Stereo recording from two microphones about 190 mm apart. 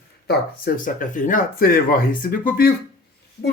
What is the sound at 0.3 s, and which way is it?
Speech, 45° left (ahead or behind).